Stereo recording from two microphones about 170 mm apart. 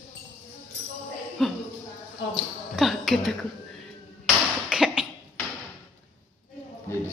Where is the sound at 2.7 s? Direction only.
Centre (ahead or behind).